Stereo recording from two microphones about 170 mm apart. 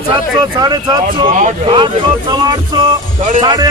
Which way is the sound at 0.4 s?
25° right (ahead or behind).